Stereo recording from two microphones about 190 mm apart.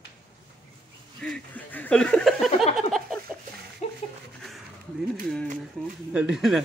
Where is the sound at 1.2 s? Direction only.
5° left (ahead or behind).